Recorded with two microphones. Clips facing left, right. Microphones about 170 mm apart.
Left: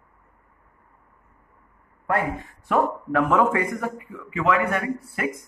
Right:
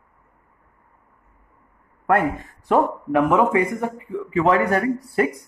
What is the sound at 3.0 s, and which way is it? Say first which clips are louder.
A man's voice: right 2 dB; 20° right (ahead or behind).